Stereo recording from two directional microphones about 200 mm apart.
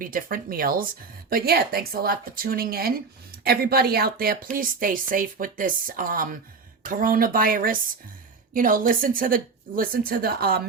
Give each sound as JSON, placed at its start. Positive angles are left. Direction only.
{"t": 0.0, "sound": "speech", "side_deg": -45}